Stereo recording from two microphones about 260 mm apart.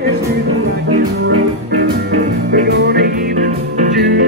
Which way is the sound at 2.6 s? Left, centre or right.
Right.